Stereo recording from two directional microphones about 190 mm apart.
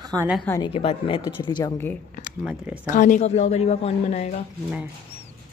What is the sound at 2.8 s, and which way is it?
A woman's voice, 45° left (ahead or behind).